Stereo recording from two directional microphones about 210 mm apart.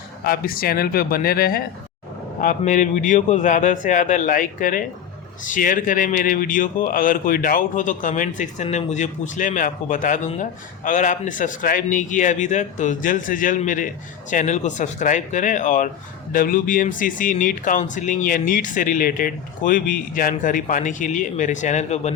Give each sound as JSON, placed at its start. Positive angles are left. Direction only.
{"t": 0.3, "sound": "a man's voice", "side_deg": 45}